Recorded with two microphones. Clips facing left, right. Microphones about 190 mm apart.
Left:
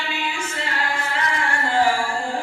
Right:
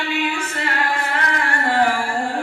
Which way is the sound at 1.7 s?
60° right (ahead or behind).